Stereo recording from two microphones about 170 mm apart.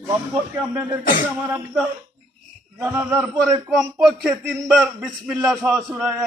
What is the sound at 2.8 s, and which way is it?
Speech, 15° right (ahead or behind).